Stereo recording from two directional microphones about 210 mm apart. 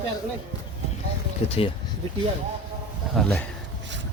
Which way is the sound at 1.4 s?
30° left (ahead or behind).